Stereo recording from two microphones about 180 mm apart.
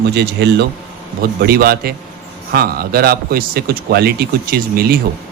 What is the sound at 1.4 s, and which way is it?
Speech, 55° right (ahead or behind).